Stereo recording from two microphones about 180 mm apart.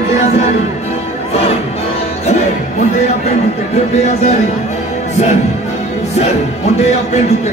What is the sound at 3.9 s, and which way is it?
Speech, 35° left (ahead or behind).